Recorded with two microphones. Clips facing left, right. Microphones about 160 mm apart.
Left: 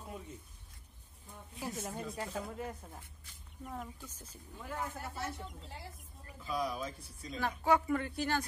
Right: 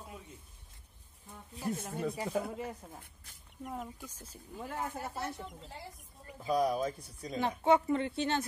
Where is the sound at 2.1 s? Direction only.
15° right (ahead or behind).